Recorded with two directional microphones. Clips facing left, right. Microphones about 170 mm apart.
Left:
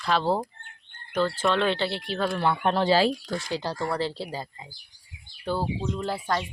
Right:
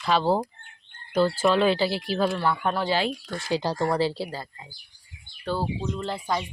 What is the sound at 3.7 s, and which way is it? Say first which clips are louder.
Speech: right 4 dB; 40° right (ahead or behind).